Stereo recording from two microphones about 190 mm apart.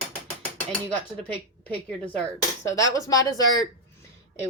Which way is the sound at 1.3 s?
10° left (ahead or behind).